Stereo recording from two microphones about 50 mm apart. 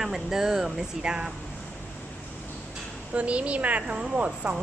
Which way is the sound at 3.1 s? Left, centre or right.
Right.